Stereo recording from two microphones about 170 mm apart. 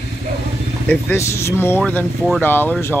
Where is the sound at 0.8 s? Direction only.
15° left (ahead or behind).